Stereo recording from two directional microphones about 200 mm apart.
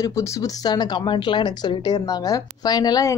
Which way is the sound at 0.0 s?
15° left (ahead or behind).